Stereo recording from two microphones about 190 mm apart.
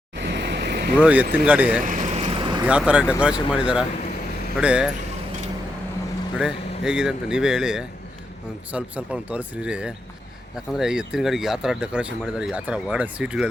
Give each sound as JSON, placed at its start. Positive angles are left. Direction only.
{"t": 0.2, "sound": "a sound", "side_deg": -65}
{"t": 0.9, "sound": "speech", "side_deg": -10}
{"t": 1.8, "sound": "boat", "side_deg": -40}
{"t": 2.6, "sound": "speech", "side_deg": -5}
{"t": 6.3, "sound": "speech", "side_deg": -5}